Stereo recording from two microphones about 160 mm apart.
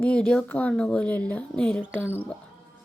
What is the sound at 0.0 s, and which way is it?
Speech, 5° left (ahead or behind).